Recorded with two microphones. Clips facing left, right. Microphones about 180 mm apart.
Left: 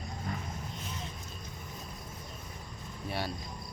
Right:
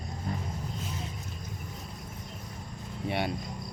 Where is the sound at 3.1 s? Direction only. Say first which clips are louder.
Right 5 dB; 20° right (ahead or behind).